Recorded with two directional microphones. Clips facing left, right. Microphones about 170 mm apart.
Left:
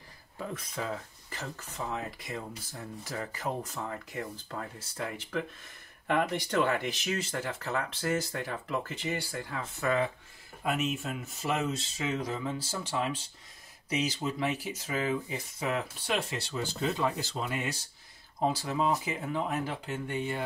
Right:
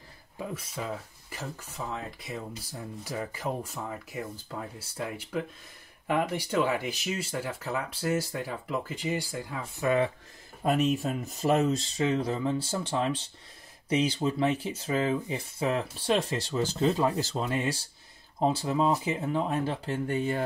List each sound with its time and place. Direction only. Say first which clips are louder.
0.4 s speech: right 1 dB; 10° right (ahead or behind)
2.7 s speech: right 3 dB; 15° right (ahead or behind)
10.6 s speech: right 6 dB; 35° right (ahead or behind)
13.8 s speech: right 5 dB; 30° right (ahead or behind)